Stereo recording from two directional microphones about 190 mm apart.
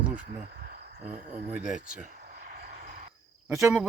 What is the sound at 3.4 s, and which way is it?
Speech, 5° right (ahead or behind).